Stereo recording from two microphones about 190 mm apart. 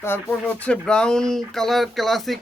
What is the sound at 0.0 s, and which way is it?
Speech, 10° left (ahead or behind).